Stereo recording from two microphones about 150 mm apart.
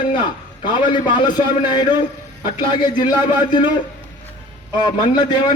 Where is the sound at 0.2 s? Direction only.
30° left (ahead or behind).